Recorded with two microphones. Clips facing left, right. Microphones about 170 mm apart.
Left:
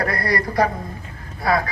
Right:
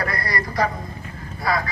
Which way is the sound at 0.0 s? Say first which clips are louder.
Left 4 dB; 55° left (ahead or behind).